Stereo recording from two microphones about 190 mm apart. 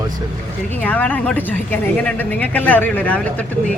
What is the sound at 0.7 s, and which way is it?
Speech, 10° left (ahead or behind).